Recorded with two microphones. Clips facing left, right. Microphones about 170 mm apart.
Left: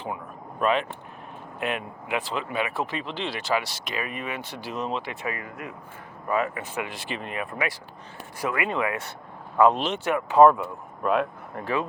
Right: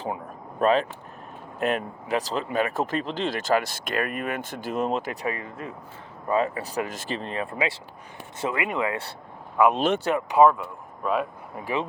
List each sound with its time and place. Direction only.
0.6 s speech: 40° right (ahead or behind)
7.2 s speech: 30° right (ahead or behind)
9.6 s speech: 10° right (ahead or behind)
10.0 s speech: 30° right (ahead or behind)
10.4 s speech: centre (ahead or behind)